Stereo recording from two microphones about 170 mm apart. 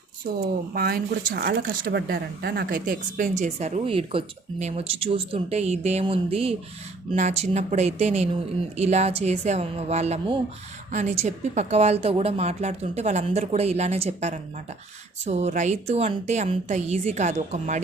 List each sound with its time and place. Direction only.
0.7 s a woman's voice: 65° right (ahead or behind); by 17.8 s 45° right (ahead or behind)